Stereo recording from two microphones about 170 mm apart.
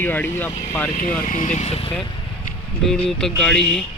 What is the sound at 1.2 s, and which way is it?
Speech, 50° left (ahead or behind).